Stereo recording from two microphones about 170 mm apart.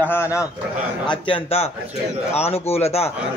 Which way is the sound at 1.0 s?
30° left (ahead or behind).